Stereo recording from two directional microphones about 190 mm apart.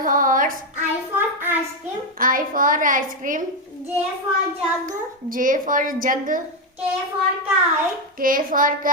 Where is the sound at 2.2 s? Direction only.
45° right (ahead or behind).